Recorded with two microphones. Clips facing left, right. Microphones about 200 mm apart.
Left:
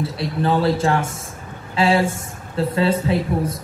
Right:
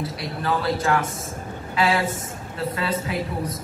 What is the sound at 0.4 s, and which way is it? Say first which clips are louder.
Speech: left 6 dB; 30° left (ahead or behind).